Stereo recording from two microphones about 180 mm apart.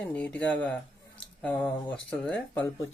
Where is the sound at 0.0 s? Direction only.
5° left (ahead or behind).